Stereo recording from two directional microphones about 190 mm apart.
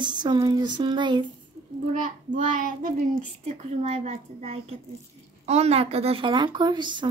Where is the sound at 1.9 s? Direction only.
40° right (ahead or behind).